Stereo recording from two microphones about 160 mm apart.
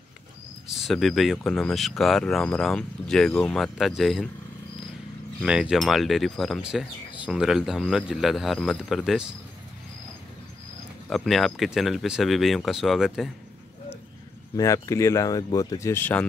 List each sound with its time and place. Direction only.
0.7 s speech: centre (ahead or behind)
5.4 s speech: 5° right (ahead or behind)
11.1 s speech: centre (ahead or behind)
14.6 s speech: 20° left (ahead or behind)